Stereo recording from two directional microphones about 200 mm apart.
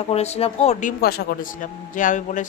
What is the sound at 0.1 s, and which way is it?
Speech, 30° left (ahead or behind).